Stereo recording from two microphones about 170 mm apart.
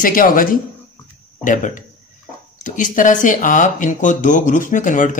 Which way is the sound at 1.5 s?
50° left (ahead or behind).